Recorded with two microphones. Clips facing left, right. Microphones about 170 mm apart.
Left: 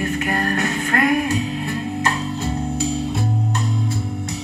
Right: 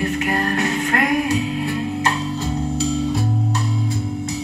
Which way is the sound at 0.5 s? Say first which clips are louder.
Right 1 dB; 40° left (ahead or behind).